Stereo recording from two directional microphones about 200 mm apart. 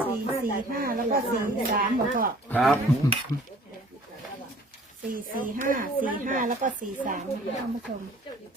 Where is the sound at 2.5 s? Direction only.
5° left (ahead or behind).